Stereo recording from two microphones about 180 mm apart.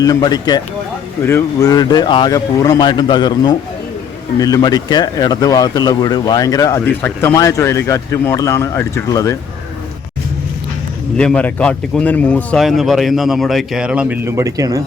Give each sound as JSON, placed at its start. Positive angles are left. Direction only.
{"t": 0.0, "sound": "speech", "side_deg": 20}
{"t": 11.2, "sound": "a man's voice", "side_deg": 5}